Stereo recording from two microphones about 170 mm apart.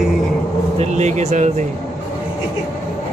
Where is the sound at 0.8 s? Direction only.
45° right (ahead or behind).